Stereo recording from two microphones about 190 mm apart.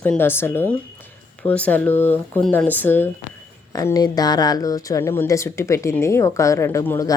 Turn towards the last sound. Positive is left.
turn(degrees=15)  # may be behind; listen again after turning